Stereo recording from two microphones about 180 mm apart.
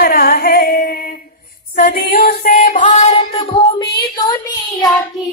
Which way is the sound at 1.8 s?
60° left (ahead or behind).